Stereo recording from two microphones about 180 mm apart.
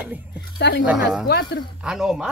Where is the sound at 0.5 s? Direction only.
70° left (ahead or behind).